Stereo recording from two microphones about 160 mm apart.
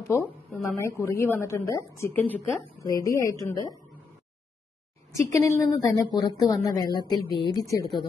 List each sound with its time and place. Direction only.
0.1 s a woman's voice: 15° left (ahead or behind)
5.2 s a woman's voice: 20° left (ahead or behind)